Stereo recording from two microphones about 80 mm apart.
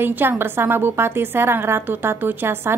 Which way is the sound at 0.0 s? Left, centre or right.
Right.